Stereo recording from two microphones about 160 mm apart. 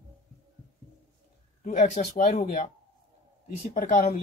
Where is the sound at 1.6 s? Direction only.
50° left (ahead or behind).